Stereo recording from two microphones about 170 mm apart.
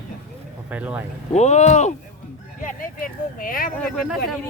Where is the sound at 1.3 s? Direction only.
40° left (ahead or behind).